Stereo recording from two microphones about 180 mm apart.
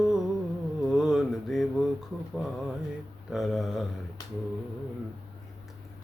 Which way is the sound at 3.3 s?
Centre (ahead or behind).